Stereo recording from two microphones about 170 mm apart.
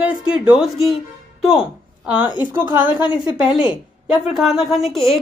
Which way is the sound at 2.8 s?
25° left (ahead or behind).